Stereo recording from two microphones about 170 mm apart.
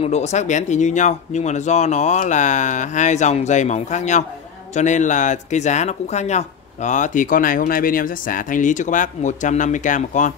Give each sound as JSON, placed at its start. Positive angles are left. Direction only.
{"t": 0.0, "sound": "speech", "side_deg": 40}